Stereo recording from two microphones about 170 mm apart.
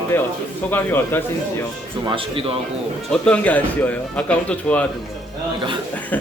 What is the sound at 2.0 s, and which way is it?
Speech, 30° right (ahead or behind).